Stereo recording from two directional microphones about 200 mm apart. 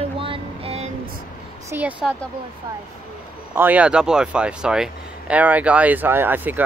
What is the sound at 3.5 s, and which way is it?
Speech, 10° right (ahead or behind).